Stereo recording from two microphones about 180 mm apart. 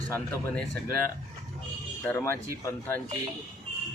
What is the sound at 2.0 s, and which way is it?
Speech, 15° left (ahead or behind).